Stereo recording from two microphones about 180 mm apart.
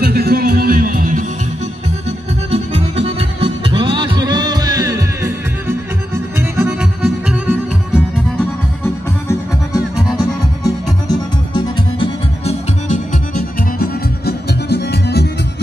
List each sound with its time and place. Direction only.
0.0 s music: 60° right (ahead or behind)
2.0 s music: 35° right (ahead or behind); by 7.5 s 10° right (ahead or behind)
8.8 s music: 15° left (ahead or behind)
12.9 s music: 45° left (ahead or behind); by 15.3 s 65° left (ahead or behind)